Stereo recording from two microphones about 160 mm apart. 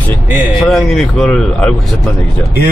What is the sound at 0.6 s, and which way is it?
Speech, centre (ahead or behind).